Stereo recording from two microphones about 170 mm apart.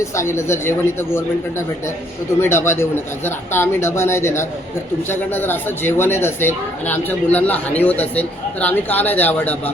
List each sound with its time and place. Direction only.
0.0 s a man's voice: 15° left (ahead or behind)